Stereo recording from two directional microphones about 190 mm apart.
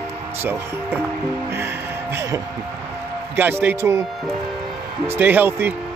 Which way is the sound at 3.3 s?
10° right (ahead or behind).